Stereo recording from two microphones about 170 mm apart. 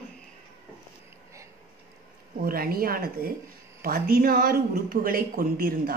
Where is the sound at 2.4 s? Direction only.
60° right (ahead or behind).